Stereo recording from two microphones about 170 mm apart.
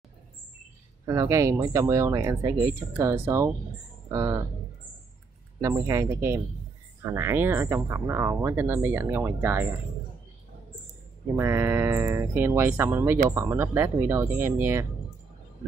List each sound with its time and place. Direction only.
1.0 s speech: 20° right (ahead or behind)
5.6 s speech: 15° right (ahead or behind)
11.3 s speech: 15° right (ahead or behind)